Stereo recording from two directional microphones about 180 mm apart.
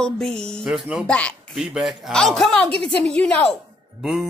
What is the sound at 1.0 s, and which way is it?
Speech, 5° left (ahead or behind).